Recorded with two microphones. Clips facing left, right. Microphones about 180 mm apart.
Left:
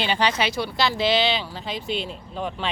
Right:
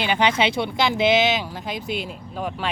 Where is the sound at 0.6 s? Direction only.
20° right (ahead or behind).